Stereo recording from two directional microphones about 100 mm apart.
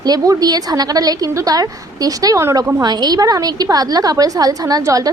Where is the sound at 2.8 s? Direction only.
45° right (ahead or behind).